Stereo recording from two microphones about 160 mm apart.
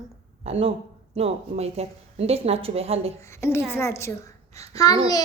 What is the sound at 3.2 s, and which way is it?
A woman's voice, 15° left (ahead or behind).